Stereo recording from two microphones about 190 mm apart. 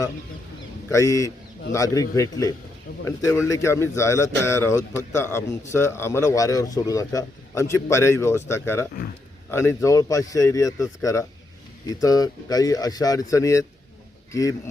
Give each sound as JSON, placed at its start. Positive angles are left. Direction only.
{"t": 0.9, "sound": "a man's voice", "side_deg": 15}